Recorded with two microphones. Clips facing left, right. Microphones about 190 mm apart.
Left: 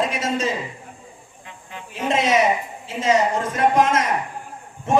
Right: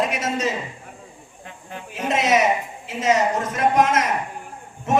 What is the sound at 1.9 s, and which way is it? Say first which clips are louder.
A man's voice: left 1 dB; 30° left (ahead or behind).